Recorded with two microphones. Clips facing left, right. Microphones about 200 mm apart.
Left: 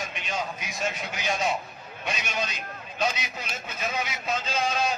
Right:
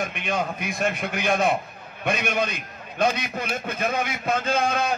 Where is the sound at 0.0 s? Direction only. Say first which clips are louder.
Right 6 dB; 55° right (ahead or behind).